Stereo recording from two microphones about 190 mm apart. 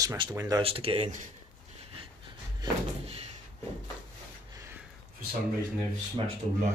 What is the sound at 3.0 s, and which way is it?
Door, 35° right (ahead or behind).